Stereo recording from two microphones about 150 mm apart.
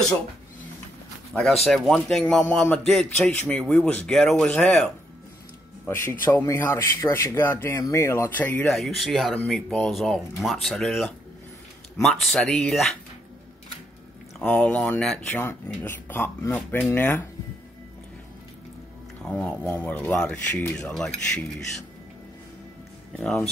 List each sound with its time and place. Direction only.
1.4 s a man's voice: centre (ahead or behind)
14.4 s speech: 5° left (ahead or behind)
19.2 s speech: 5° left (ahead or behind)
23.1 s a man's voice: 5° left (ahead or behind)